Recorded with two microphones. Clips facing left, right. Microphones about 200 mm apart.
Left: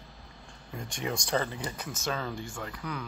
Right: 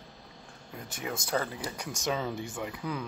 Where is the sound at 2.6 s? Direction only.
20° right (ahead or behind).